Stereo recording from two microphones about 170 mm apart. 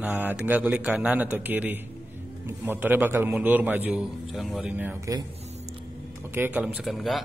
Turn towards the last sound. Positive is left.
turn(degrees=0)  # may be behind; listen again after turning